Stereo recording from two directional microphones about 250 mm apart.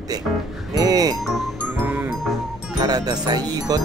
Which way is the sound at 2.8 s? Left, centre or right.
Centre.